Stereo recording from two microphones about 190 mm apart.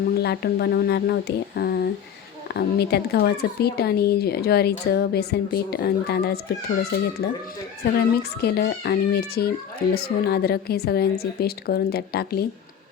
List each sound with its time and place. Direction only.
0.2 s speech: 60° left (ahead or behind)